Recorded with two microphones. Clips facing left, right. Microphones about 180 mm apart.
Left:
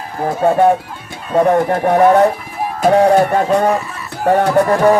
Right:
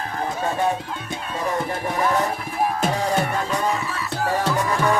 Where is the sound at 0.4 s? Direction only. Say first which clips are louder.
Left 13 dB; 55° left (ahead or behind).